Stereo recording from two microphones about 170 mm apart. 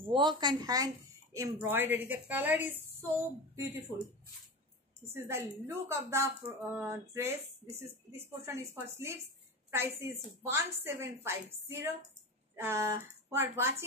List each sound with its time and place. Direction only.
0.0 s speech: 25° right (ahead or behind)
5.1 s speech: 15° right (ahead or behind)
8.8 s speech: 15° right (ahead or behind)